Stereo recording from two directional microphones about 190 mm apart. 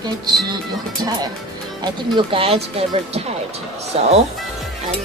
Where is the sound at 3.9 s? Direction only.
35° right (ahead or behind).